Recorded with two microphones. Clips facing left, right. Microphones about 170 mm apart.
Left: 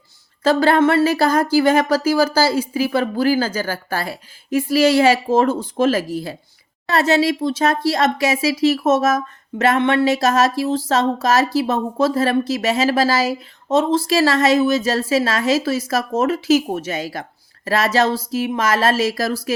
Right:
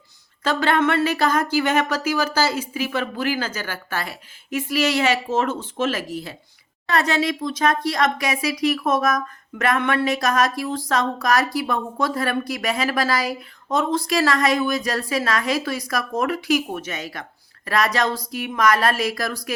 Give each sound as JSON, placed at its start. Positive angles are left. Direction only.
{"t": 0.4, "sound": "speech", "side_deg": 35}